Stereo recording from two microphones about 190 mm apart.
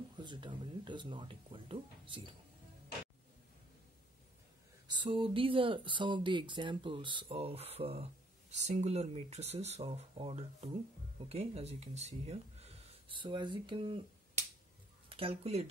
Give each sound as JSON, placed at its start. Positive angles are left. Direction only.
{"t": 0.2, "sound": "speech", "side_deg": -25}
{"t": 4.8, "sound": "speech", "side_deg": -25}
{"t": 15.0, "sound": "speech", "side_deg": -30}